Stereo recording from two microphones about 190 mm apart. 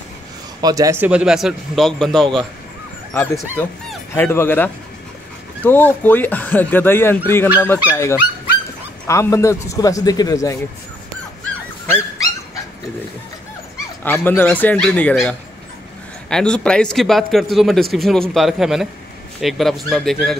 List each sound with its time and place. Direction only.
0.6 s a man's voice: 20° right (ahead or behind); by 10.6 s 15° left (ahead or behind)
14.0 s a man's voice: 10° left (ahead or behind)